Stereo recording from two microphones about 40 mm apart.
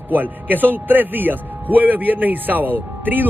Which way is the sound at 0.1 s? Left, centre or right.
Right.